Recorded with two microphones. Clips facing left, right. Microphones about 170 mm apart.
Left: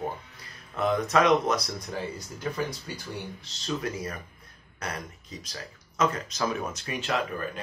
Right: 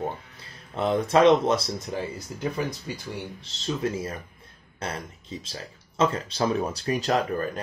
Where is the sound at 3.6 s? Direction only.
25° right (ahead or behind).